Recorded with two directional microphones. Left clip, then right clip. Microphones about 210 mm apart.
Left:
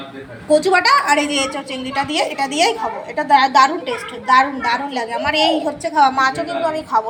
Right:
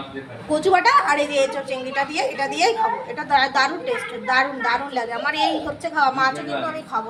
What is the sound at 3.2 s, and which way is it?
A woman's voice, 20° left (ahead or behind).